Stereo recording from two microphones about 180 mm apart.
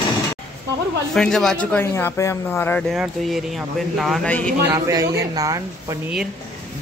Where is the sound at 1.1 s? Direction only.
Centre (ahead or behind).